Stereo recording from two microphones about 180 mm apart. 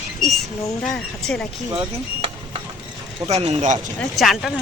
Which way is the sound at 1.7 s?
30° right (ahead or behind).